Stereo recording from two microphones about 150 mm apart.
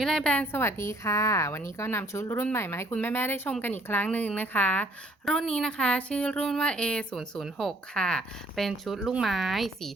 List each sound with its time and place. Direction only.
0.0 s a woman's voice: 5° left (ahead or behind)